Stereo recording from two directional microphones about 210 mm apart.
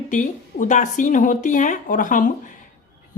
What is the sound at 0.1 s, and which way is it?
Speech, 35° left (ahead or behind).